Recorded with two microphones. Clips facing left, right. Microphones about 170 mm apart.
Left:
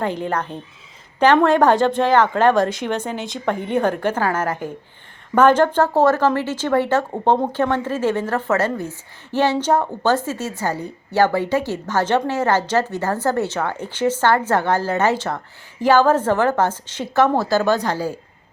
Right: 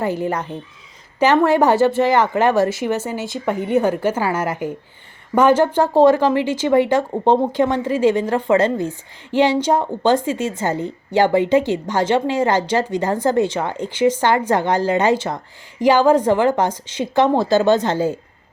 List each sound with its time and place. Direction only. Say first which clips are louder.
0.0 s speech: right 2 dB; 10° right (ahead or behind)